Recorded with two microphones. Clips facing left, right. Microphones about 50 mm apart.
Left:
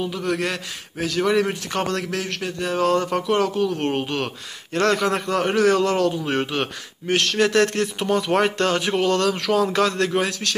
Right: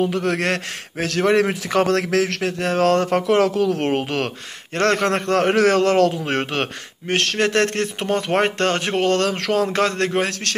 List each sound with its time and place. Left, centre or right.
0.0 s speech: right
4.7 s a man's voice: right
6.2 s speech: right